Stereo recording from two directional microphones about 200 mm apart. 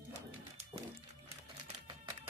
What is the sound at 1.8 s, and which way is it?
Music, 20° right (ahead or behind).